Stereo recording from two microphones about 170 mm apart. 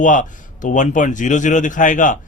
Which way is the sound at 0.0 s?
50° left (ahead or behind).